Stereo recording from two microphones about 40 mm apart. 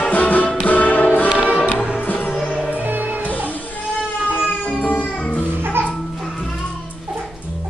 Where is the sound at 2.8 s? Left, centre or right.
Right.